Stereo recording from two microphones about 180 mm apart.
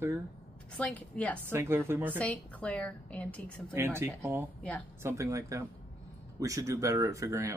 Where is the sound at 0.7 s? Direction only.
5° left (ahead or behind).